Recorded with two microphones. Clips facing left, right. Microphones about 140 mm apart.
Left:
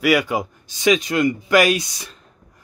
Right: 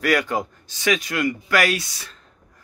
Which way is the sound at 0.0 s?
10° left (ahead or behind).